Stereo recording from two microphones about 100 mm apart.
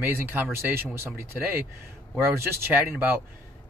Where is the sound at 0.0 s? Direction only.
20° right (ahead or behind).